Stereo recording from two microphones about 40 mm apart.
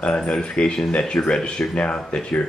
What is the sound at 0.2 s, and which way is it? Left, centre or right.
Speech, left.